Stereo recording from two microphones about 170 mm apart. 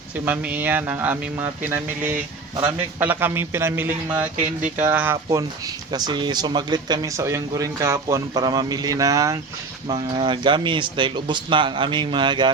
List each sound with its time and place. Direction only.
0.3 s speech: 10° right (ahead or behind)
4.4 s speech: 50° right (ahead or behind)
4.9 s speech: 10° right (ahead or behind)